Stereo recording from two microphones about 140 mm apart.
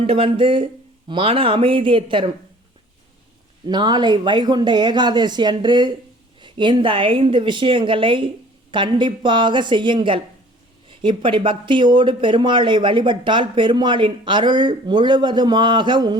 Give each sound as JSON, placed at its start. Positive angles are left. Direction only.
{"t": 0.0, "sound": "speech", "side_deg": -40}
{"t": 3.7, "sound": "speech", "side_deg": -30}